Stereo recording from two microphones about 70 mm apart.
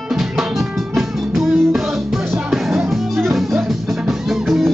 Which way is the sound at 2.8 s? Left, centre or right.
Right.